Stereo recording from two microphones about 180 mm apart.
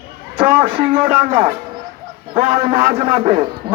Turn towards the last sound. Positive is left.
turn(degrees=-30)  # may be behind; listen again after turning